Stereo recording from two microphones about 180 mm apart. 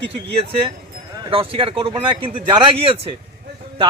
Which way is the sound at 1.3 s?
30° right (ahead or behind).